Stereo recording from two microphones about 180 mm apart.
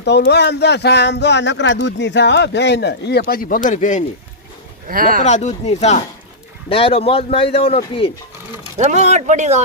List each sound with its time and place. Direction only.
0.0 s speech: 70° left (ahead or behind); by 4.0 s 45° left (ahead or behind)
4.9 s speech: 55° right (ahead or behind)
5.2 s speech: 40° left (ahead or behind)
8.8 s speech: 40° right (ahead or behind)